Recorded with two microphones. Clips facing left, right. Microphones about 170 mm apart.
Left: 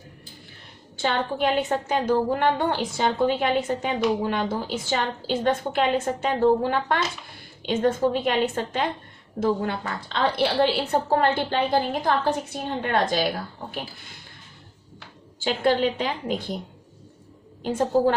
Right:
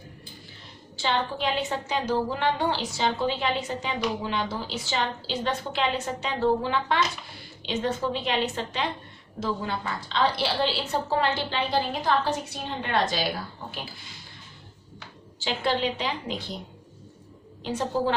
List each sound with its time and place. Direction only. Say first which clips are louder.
0.9 s a woman's voice: left 3 dB; 50° left (ahead or behind)
15.4 s a woman's voice: left 5 dB; 50° left (ahead or behind)
17.6 s a woman's voice: left 6 dB; 50° left (ahead or behind)